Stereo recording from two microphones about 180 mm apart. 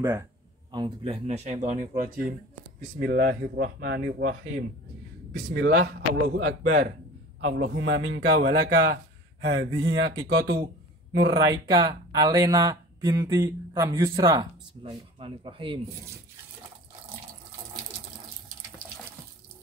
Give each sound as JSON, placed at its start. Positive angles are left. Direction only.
{"t": 0.7, "sound": "speech", "side_deg": -25}
{"t": 3.0, "sound": "speech", "side_deg": -55}
{"t": 5.5, "sound": "a man's voice", "side_deg": -70}
{"t": 10.2, "sound": "speech", "side_deg": -65}
{"t": 11.3, "sound": "speech", "side_deg": -25}